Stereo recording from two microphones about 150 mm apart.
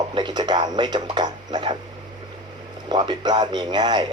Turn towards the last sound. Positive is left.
turn(degrees=-30)  # may be behind; listen again after turning